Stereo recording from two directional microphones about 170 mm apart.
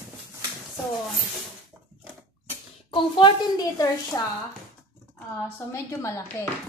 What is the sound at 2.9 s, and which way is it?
A woman's voice, 30° left (ahead or behind).